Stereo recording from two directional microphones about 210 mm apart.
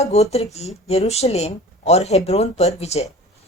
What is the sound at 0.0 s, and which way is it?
A woman's voice, 30° left (ahead or behind).